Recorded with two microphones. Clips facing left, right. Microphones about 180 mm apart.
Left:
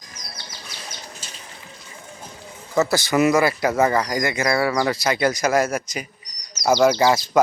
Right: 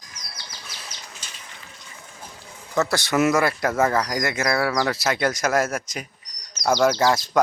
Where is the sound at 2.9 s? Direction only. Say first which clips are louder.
Left 2 dB; centre (ahead or behind).